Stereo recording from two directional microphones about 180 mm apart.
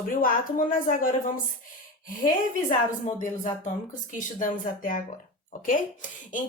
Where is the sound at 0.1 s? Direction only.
50° left (ahead or behind).